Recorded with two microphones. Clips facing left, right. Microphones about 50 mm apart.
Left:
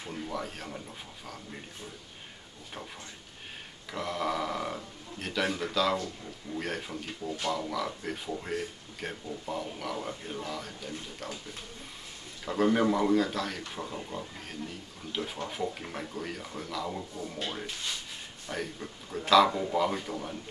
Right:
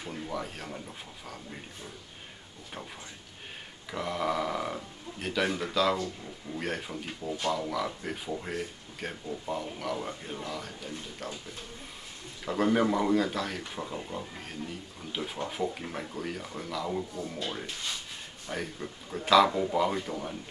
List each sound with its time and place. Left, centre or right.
0.0 s speech: centre
3.9 s speech: centre
12.4 s speech: centre